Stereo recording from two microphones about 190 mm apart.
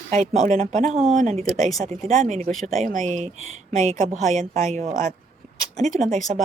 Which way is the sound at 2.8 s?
40° right (ahead or behind).